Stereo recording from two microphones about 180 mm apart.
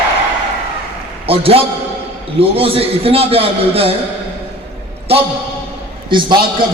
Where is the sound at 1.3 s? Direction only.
30° right (ahead or behind).